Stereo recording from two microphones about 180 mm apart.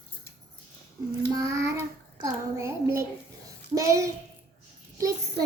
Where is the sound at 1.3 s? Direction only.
20° right (ahead or behind).